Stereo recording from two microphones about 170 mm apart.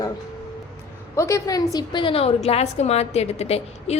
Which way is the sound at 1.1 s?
20° left (ahead or behind).